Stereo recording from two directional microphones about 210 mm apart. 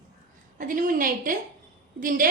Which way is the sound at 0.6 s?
40° right (ahead or behind).